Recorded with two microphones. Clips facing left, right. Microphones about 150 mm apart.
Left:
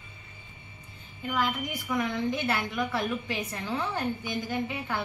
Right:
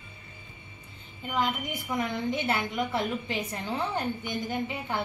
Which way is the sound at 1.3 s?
25° right (ahead or behind).